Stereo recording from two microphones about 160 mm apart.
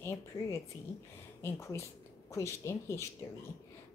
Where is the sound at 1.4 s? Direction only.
15° left (ahead or behind).